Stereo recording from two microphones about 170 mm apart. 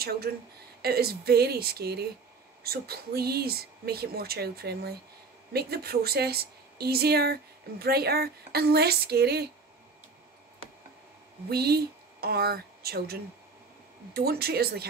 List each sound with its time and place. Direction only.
0.3 s a woman's voice: 70° right (ahead or behind)
11.4 s speech: 70° right (ahead or behind)